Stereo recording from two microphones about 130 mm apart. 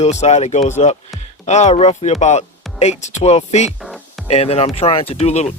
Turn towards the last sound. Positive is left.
turn(degrees=55)  # may be behind; listen again after turning